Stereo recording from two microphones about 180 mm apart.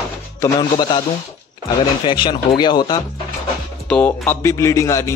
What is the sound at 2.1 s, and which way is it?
Speech, 25° left (ahead or behind).